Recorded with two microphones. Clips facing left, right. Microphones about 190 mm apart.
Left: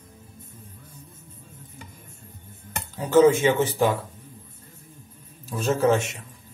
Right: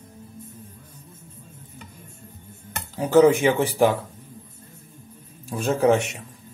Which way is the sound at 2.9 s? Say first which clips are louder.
Right 1 dB; 15° right (ahead or behind).